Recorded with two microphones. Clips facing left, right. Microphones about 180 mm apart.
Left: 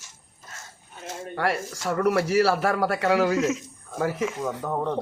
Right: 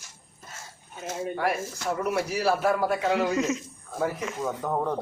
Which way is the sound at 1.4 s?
80° left.